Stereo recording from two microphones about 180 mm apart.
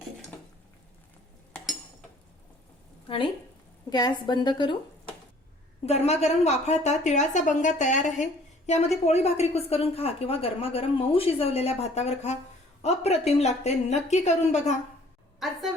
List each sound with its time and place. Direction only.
3.8 s a woman's voice: 25° left (ahead or behind)
5.8 s a woman's voice: 35° left (ahead or behind)
15.4 s a woman's voice: centre (ahead or behind)